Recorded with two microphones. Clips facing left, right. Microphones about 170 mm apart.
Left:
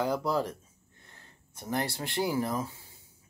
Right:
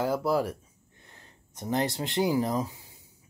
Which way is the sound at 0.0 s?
5° right (ahead or behind).